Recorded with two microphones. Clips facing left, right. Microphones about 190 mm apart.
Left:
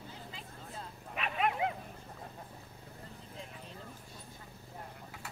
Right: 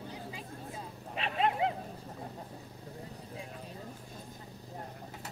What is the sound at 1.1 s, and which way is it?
Bow-wow, 30° right (ahead or behind).